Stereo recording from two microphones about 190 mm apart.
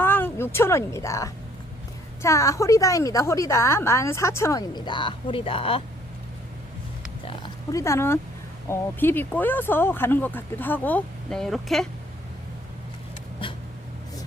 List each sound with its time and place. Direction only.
0.0 s a woman's voice: 10° left (ahead or behind); by 5.8 s 30° left (ahead or behind)
7.3 s oink: 20° left (ahead or behind)
8.7 s a woman's voice: 10° left (ahead or behind)
13.4 s a sound: 25° left (ahead or behind)